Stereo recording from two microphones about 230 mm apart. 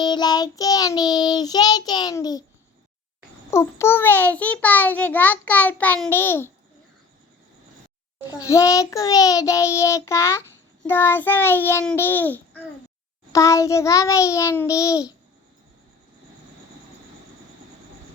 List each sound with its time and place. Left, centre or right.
0.0 s child singing: centre
3.5 s a child's voice: centre
8.3 s a child's voice: centre